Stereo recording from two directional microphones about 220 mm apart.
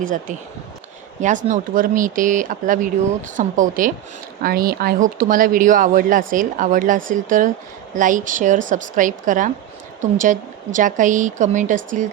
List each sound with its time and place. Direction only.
0.0 s speech: 35° right (ahead or behind)